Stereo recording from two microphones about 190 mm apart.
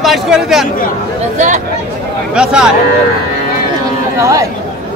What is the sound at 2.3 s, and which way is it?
Speech, 5° right (ahead or behind).